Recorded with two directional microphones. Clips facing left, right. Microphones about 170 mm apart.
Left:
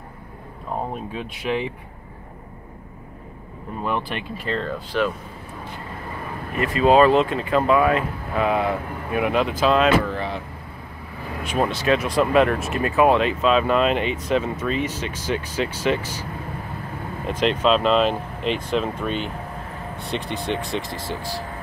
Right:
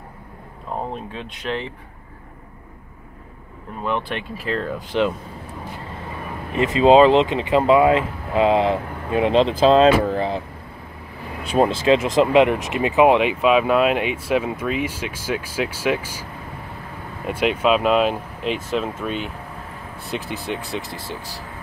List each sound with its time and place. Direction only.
1.1 s speech: 10° left (ahead or behind)
3.8 s speech: 5° left (ahead or behind)
4.7 s speech: 20° right (ahead or behind)
6.5 s speech: 25° right (ahead or behind)
11.5 s speech: 25° right (ahead or behind); by 16.3 s 10° right (ahead or behind)
17.3 s speech: 10° right (ahead or behind)